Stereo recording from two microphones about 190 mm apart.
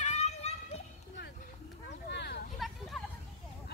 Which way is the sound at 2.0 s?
60° left (ahead or behind).